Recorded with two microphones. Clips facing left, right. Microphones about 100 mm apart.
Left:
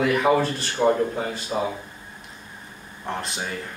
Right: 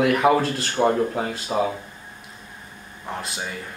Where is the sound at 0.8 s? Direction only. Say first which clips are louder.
Even; 35° right (ahead or behind).